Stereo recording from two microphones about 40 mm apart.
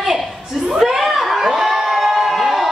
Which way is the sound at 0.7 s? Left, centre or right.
Centre.